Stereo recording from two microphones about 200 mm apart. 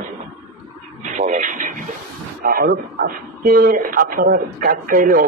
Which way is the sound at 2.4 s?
50° right (ahead or behind).